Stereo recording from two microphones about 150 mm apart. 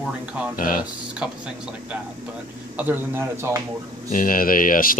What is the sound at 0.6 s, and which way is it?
Speech, 65° left (ahead or behind).